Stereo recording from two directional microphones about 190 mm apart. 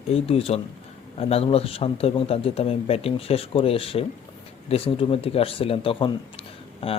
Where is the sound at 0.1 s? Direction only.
30° left (ahead or behind).